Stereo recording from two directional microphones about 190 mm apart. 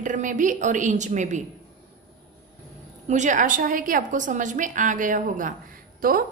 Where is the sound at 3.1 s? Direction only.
40° right (ahead or behind).